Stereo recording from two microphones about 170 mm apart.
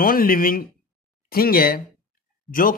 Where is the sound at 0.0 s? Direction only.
55° left (ahead or behind).